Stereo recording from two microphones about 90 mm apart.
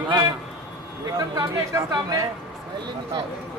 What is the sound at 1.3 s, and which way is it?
Speech, 45° right (ahead or behind).